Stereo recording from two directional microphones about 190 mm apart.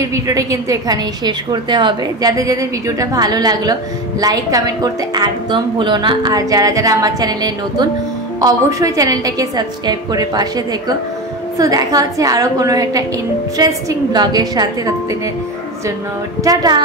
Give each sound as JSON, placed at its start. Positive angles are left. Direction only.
{"t": 0.0, "sound": "a woman's voice", "side_deg": -15}
{"t": 16.4, "sound": "a woman's voice", "side_deg": -20}